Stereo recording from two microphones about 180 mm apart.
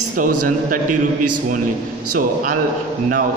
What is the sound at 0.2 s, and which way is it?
Speech, 50° right (ahead or behind).